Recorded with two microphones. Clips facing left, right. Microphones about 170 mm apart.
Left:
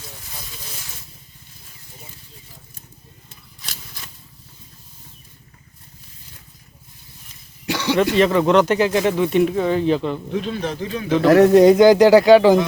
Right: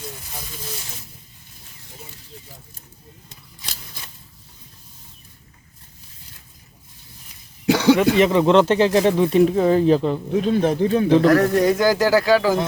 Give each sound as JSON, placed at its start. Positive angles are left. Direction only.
{"t": 7.9, "sound": "speech", "side_deg": -15}
{"t": 11.2, "sound": "speech", "side_deg": 25}